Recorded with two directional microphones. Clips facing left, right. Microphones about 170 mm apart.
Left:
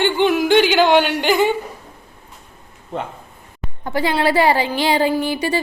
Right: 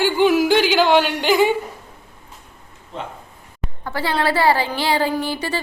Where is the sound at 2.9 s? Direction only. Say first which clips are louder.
Left 5 dB; 55° left (ahead or behind).